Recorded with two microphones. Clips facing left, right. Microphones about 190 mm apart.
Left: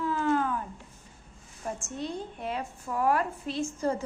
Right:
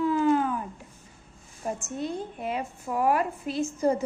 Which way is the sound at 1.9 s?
5° right (ahead or behind).